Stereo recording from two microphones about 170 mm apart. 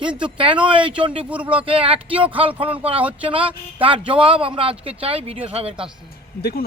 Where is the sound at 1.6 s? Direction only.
35° right (ahead or behind).